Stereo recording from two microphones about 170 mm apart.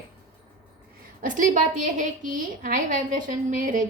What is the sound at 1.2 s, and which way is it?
A woman's voice, 50° right (ahead or behind).